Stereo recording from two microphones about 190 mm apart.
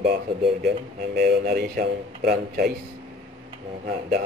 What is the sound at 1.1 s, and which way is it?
A man's voice, 55° right (ahead or behind).